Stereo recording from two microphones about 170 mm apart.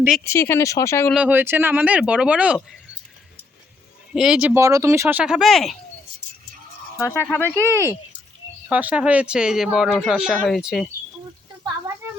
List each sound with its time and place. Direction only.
0.3 s speech: 15° left (ahead or behind)
1.1 s speech: 10° right (ahead or behind)
4.1 s speech: 5° right (ahead or behind)
4.6 s speech: 20° right (ahead or behind); by 5.7 s centre (ahead or behind)
7.0 s speech: 15° left (ahead or behind)
8.7 s speech: 10° right (ahead or behind)
12.0 s a sound: 15° right (ahead or behind)